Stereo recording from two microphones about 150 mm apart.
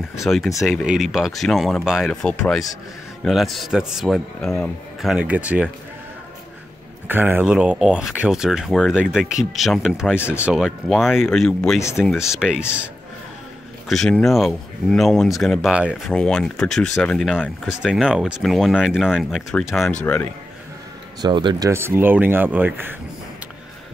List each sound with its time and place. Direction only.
0.2 s speech: centre (ahead or behind)
7.1 s speech: 15° right (ahead or behind)
13.8 s speech: centre (ahead or behind)
16.1 s speech: 5° left (ahead or behind)
21.2 s speech: 30° right (ahead or behind)
21.6 s speech: 15° right (ahead or behind)